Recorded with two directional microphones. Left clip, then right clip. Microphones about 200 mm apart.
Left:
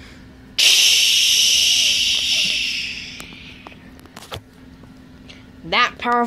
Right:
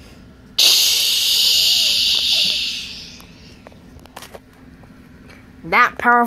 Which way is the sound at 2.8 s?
15° right (ahead or behind).